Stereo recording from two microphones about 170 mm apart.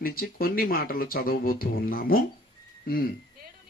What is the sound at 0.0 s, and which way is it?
Speech, 60° left (ahead or behind).